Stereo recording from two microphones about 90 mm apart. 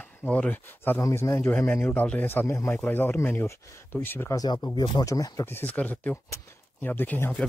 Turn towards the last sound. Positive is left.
turn(degrees=20)  # may be behind; listen again after turning